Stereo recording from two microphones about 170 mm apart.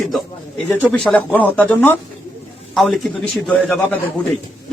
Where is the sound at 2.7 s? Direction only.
Centre (ahead or behind).